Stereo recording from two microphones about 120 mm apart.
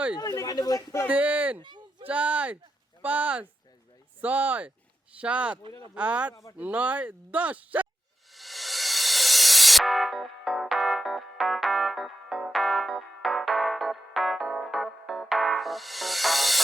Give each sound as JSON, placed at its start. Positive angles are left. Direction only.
{"t": 0.2, "sound": "speech", "side_deg": 30}
{"t": 1.0, "sound": "speech", "side_deg": -15}
{"t": 1.6, "sound": "a sound", "side_deg": -40}
{"t": 2.0, "sound": "speech", "side_deg": -10}
{"t": 8.3, "sound": "music", "side_deg": 0}